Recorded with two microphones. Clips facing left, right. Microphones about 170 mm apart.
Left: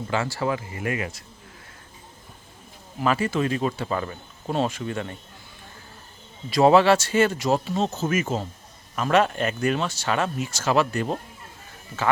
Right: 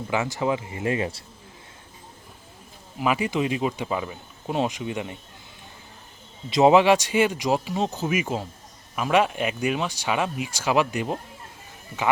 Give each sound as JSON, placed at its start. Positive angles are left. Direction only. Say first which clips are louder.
{"t": 0.1, "sound": "speech", "louder": "right 1 dB", "side_deg": -15}
{"t": 3.0, "sound": "speech", "louder": "left 1 dB", "side_deg": -15}
{"t": 6.5, "sound": "speech", "louder": "even", "side_deg": -20}